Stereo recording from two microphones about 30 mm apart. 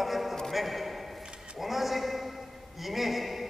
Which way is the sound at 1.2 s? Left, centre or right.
Right.